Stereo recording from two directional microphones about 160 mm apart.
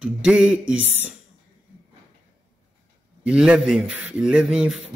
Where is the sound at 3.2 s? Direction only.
5° right (ahead or behind).